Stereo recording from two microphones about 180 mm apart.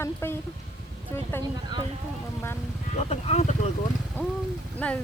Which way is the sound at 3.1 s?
35° left (ahead or behind).